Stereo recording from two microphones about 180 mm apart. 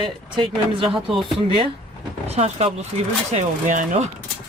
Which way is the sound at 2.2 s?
35° right (ahead or behind).